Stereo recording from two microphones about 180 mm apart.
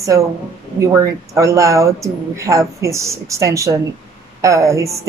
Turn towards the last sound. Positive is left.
turn(degrees=-15)  # may be behind; listen again after turning